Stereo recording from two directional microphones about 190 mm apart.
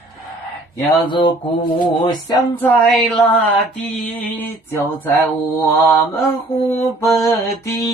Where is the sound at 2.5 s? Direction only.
10° left (ahead or behind).